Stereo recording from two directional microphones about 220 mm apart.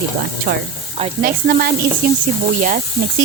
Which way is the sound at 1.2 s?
40° right (ahead or behind).